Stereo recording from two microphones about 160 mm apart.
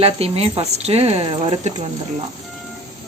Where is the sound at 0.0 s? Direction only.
40° right (ahead or behind).